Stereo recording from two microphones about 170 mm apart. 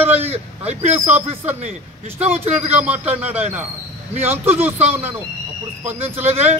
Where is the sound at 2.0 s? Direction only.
10° right (ahead or behind).